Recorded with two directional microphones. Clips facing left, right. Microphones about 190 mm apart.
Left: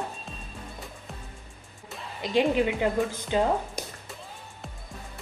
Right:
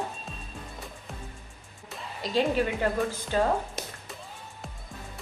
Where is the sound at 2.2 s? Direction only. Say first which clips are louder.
Left 2 dB; 15° left (ahead or behind).